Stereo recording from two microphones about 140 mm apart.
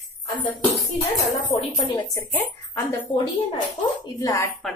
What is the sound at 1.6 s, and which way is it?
Speech, 40° left (ahead or behind).